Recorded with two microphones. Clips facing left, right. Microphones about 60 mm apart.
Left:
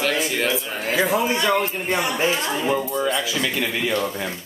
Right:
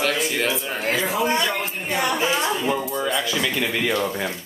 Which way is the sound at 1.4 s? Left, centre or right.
Left.